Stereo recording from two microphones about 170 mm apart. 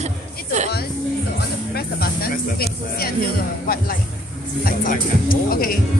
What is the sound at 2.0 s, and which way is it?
Speech, 65° left (ahead or behind).